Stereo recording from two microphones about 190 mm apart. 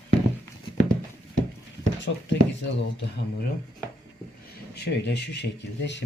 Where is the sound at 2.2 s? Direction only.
70° left (ahead or behind).